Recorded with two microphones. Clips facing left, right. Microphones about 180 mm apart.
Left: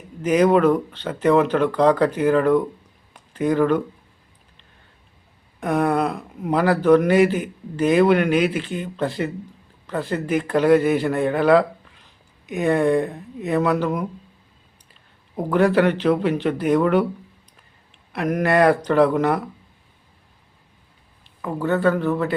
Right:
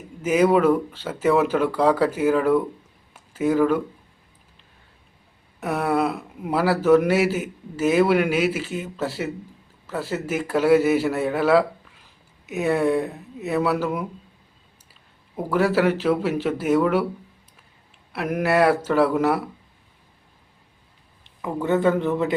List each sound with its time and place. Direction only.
0.2 s speech: 5° right (ahead or behind)
3.1 s a sound: 5° right (ahead or behind)
5.5 s speech: 5° right (ahead or behind)
15.4 s speech: 5° right (ahead or behind)
18.1 s speech: 5° right (ahead or behind)
21.2 s speech: 15° right (ahead or behind)